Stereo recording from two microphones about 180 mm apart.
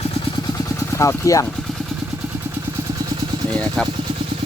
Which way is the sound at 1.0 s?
15° left (ahead or behind).